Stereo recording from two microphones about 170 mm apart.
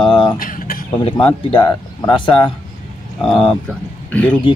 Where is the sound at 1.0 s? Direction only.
30° left (ahead or behind).